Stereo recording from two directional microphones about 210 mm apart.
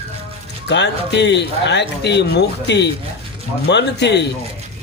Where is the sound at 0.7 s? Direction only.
55° left (ahead or behind).